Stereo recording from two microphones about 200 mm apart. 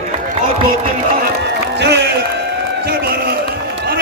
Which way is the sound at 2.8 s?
50° right (ahead or behind).